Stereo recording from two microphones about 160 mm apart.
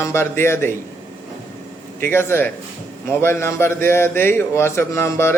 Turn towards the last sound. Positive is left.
turn(degrees=15)  # may be behind; listen again after turning